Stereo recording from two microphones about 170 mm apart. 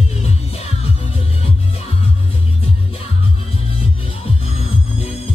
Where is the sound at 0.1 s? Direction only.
40° left (ahead or behind).